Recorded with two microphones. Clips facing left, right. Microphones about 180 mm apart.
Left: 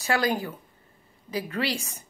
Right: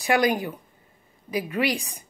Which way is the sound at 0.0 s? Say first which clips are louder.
Right 4 dB; 15° right (ahead or behind).